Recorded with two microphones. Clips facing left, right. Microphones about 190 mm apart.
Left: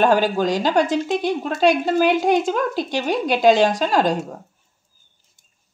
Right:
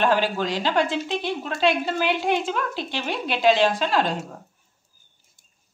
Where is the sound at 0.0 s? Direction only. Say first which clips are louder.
Left 5 dB; 45° left (ahead or behind).